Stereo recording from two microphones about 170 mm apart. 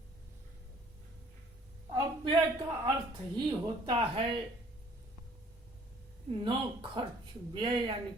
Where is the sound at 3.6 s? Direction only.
30° right (ahead or behind).